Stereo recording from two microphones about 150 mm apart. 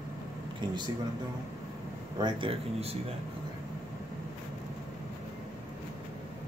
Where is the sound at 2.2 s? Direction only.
40° right (ahead or behind).